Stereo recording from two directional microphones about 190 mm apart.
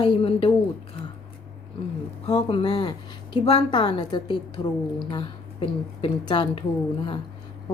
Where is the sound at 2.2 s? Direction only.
25° left (ahead or behind).